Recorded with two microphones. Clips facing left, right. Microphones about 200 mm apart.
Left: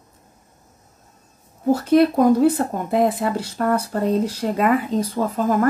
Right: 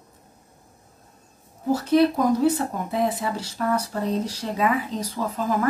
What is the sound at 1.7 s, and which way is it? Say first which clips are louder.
Speech: left 3 dB; 55° left (ahead or behind).